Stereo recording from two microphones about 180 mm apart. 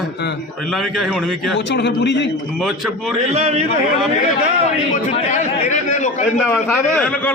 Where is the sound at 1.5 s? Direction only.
70° left (ahead or behind).